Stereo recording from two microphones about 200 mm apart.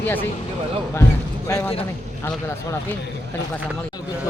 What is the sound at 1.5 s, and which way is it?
Speech, 15° left (ahead or behind).